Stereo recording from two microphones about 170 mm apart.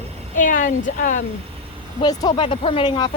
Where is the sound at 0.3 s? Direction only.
50° left (ahead or behind).